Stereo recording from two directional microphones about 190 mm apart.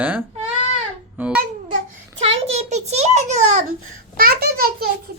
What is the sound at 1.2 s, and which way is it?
Speech, 10° right (ahead or behind).